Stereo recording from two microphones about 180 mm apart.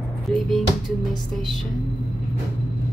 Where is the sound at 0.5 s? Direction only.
Centre (ahead or behind).